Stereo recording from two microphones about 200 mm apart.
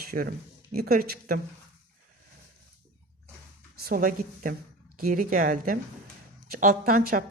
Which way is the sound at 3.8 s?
45° right (ahead or behind).